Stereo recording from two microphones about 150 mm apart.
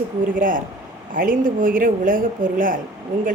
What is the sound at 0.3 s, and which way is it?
A woman's voice, 65° right (ahead or behind).